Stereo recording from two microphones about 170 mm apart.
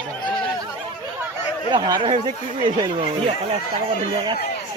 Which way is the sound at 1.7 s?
25° right (ahead or behind).